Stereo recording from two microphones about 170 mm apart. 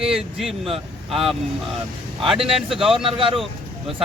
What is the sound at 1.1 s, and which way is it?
Speech, centre (ahead or behind).